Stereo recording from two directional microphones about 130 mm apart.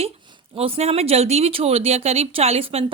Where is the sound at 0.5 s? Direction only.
50° right (ahead or behind).